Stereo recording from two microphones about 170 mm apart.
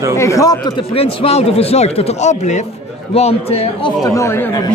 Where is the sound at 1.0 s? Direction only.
35° left (ahead or behind).